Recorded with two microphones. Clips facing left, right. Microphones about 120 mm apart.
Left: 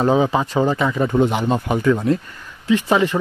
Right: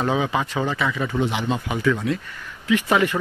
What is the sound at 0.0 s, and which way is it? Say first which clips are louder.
Speech: left 5 dB; 30° left (ahead or behind).